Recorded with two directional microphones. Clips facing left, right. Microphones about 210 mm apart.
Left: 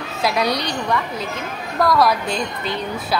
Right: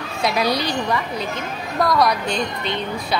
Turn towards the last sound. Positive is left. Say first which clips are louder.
# even
turn(degrees=5)  # may be behind; listen again after turning